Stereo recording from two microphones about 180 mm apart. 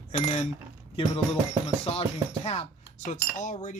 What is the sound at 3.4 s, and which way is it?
Chink, 40° left (ahead or behind).